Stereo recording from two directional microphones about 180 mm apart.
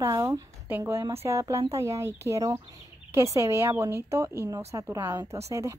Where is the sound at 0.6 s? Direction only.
15° right (ahead or behind).